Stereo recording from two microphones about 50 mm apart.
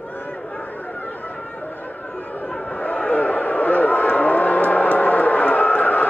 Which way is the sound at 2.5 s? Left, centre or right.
Left.